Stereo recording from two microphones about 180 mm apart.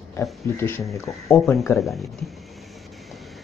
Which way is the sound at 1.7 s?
Centre (ahead or behind).